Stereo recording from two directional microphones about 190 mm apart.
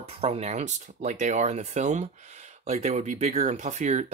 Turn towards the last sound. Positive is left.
turn(degrees=-35)  # may be behind; listen again after turning